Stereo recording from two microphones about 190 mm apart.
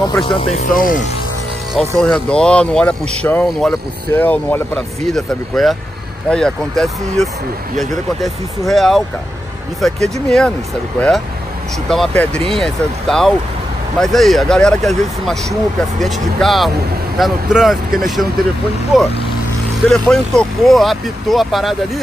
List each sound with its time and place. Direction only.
0.0 s speech: 25° left (ahead or behind); by 1.0 s 45° left (ahead or behind)
2.0 s speech: 5° left (ahead or behind)
9.9 s speech: 35° right (ahead or behind)
11.0 s speech: 5° left (ahead or behind)